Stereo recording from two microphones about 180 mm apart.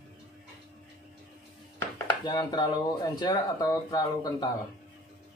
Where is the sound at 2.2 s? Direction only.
25° left (ahead or behind).